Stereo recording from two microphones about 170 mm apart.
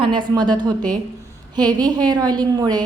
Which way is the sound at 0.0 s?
30° right (ahead or behind).